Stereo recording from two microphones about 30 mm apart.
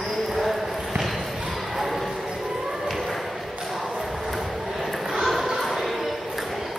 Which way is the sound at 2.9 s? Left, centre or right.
Centre.